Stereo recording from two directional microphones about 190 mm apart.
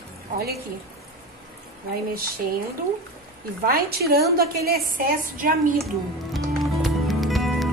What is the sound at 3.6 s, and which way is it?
A woman's voice, 55° right (ahead or behind).